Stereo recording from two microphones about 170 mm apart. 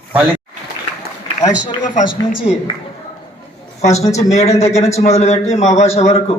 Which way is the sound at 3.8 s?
40° left (ahead or behind).